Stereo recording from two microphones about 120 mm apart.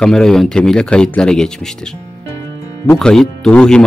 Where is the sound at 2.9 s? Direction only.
5° left (ahead or behind).